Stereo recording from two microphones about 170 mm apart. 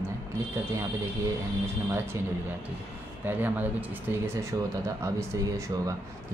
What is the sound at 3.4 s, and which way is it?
Speech, 10° right (ahead or behind).